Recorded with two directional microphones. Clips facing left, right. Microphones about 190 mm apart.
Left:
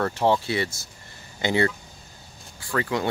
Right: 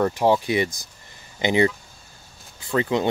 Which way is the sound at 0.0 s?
10° right (ahead or behind).